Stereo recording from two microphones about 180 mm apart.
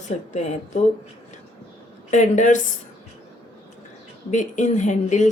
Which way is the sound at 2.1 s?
45° left (ahead or behind).